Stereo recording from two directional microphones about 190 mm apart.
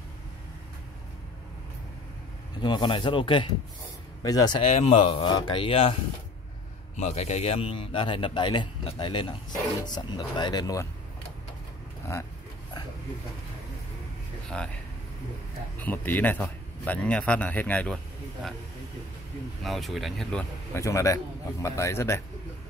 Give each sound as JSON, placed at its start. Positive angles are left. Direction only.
{"t": 2.6, "sound": "a man's voice", "side_deg": 25}
{"t": 4.6, "sound": "a man's voice", "side_deg": 35}
{"t": 7.0, "sound": "a man's voice", "side_deg": 35}
{"t": 14.5, "sound": "speech", "side_deg": 5}
{"t": 15.8, "sound": "a man's voice", "side_deg": 10}
{"t": 19.6, "sound": "a man's voice", "side_deg": 0}